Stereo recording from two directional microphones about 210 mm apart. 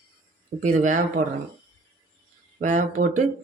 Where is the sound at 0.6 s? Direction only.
35° right (ahead or behind).